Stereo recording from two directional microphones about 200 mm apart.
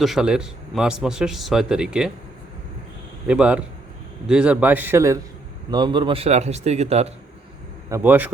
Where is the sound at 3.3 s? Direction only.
5° right (ahead or behind); by 7.1 s 30° right (ahead or behind).